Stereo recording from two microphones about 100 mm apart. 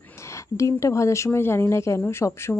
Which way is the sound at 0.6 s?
30° left (ahead or behind).